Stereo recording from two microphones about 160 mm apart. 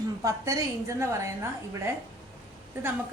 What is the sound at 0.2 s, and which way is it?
A woman's voice, 20° right (ahead or behind).